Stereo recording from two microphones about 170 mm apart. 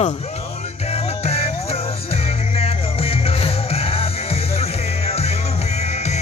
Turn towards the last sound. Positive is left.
turn(degrees=40)  # may be behind; listen again after turning